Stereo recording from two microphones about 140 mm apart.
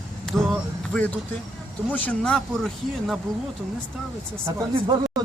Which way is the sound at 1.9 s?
10° left (ahead or behind).